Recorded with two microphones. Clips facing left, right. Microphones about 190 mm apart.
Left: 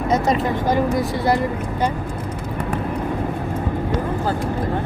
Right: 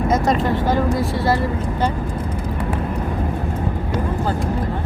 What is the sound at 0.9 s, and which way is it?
Speech, 15° left (ahead or behind).